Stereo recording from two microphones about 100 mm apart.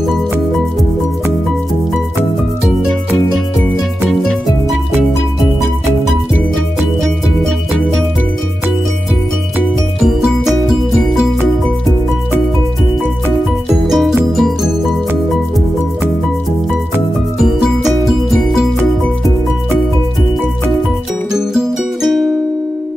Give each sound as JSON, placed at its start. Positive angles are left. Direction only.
{"t": 6.8, "sound": "music", "side_deg": 0}
{"t": 10.0, "sound": "music", "side_deg": 0}
{"t": 13.8, "sound": "music", "side_deg": -5}
{"t": 17.4, "sound": "music", "side_deg": -5}
{"t": 21.3, "sound": "music", "side_deg": -5}